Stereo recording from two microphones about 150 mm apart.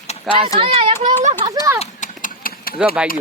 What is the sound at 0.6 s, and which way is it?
Speech, 35° right (ahead or behind).